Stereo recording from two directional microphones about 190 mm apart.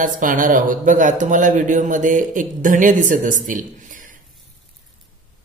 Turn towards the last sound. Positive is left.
turn(degrees=-45)  # may be behind; listen again after turning